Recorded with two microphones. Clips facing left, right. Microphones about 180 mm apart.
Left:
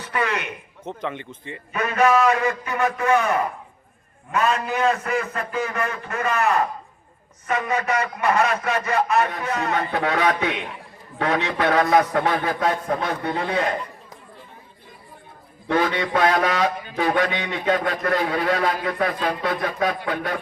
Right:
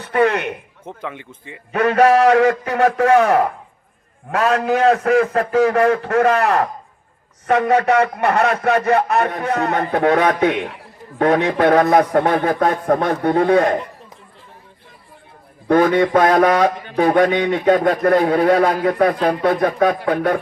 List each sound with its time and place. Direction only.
0.0 s a sound: 55° right (ahead or behind)
0.9 s speech: 10° right (ahead or behind)
1.7 s a man's voice: 70° right (ahead or behind); by 13.7 s 50° right (ahead or behind)
15.6 s speech: 50° right (ahead or behind)